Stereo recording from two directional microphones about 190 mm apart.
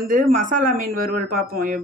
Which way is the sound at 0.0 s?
45° right (ahead or behind).